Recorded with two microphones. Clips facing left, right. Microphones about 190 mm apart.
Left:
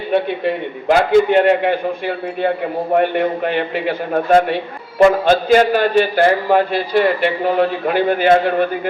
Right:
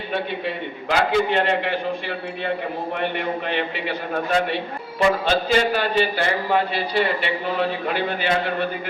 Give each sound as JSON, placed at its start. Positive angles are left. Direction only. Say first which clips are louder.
{"t": 0.4, "sound": "a man's voice", "louder": "left 9 dB", "side_deg": 50}